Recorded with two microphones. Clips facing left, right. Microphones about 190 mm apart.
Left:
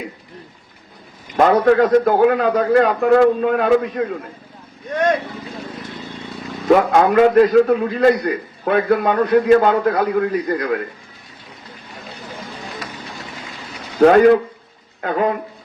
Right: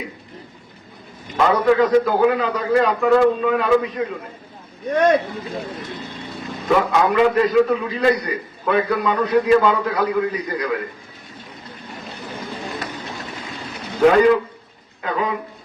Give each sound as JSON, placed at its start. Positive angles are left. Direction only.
{"t": 1.4, "sound": "a man's voice", "side_deg": 55}
{"t": 6.7, "sound": "a man's voice", "side_deg": 55}
{"t": 14.1, "sound": "a man's voice", "side_deg": 55}